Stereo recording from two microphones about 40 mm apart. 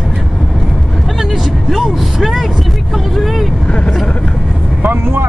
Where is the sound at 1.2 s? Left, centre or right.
Centre.